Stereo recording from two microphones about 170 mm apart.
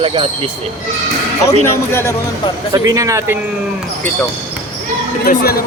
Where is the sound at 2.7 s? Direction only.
20° right (ahead or behind).